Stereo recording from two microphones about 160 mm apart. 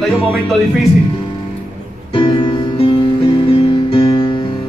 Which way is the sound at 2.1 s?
35° left (ahead or behind).